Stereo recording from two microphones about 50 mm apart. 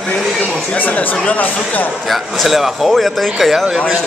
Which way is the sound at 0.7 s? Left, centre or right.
Left.